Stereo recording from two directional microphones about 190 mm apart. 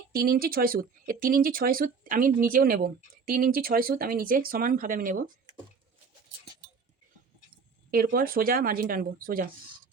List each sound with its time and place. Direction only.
0.1 s speech: 50° right (ahead or behind)
7.9 s speech: 50° right (ahead or behind)